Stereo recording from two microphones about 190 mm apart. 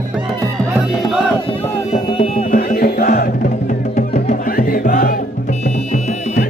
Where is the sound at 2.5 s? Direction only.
50° left (ahead or behind).